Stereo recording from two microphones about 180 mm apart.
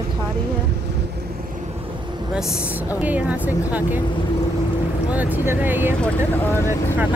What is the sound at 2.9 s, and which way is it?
Speech, 10° right (ahead or behind).